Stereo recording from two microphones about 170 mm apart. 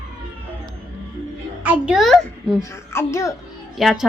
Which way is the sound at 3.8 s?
Centre (ahead or behind).